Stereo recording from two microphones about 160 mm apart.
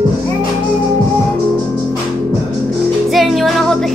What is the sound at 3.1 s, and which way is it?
Music, centre (ahead or behind).